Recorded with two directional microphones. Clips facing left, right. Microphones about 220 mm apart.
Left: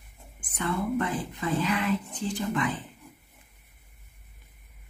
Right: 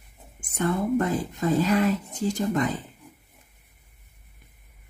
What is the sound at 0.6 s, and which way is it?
Speech, 45° right (ahead or behind).